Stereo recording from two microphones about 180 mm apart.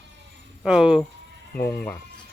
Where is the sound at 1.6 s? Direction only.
10° left (ahead or behind).